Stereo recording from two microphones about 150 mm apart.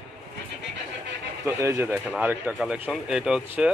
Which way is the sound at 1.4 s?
20° right (ahead or behind).